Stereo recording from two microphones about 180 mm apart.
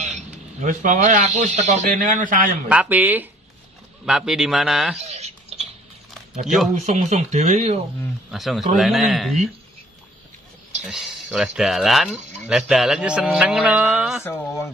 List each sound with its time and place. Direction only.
0.6 s speech: 45° right (ahead or behind)
2.7 s a man's voice: 10° right (ahead or behind)
4.9 s a sound: 35° right (ahead or behind)
6.4 s a man's voice: centre (ahead or behind)
6.7 s speech: 40° right (ahead or behind)
8.3 s a man's voice: centre (ahead or behind)
10.8 s a man's voice: centre (ahead or behind)
14.2 s speech: 15° left (ahead or behind)